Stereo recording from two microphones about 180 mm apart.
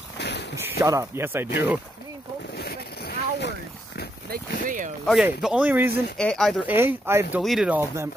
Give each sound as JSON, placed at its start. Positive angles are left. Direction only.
{"t": 0.2, "sound": "a sound", "side_deg": 70}
{"t": 0.6, "sound": "speech", "side_deg": -15}
{"t": 2.5, "sound": "a sound", "side_deg": 65}
{"t": 4.3, "sound": "speech", "side_deg": -45}
{"t": 5.0, "sound": "a man's voice", "side_deg": 0}
{"t": 6.1, "sound": "speech", "side_deg": 5}
{"t": 6.7, "sound": "a man's voice", "side_deg": -10}